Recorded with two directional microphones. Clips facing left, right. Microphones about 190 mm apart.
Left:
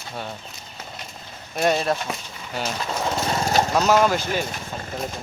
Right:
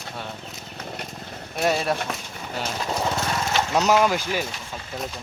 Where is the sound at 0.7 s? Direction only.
60° right (ahead or behind).